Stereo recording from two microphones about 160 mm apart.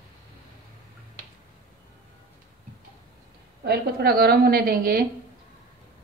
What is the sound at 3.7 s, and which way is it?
A woman's voice, 75° right (ahead or behind).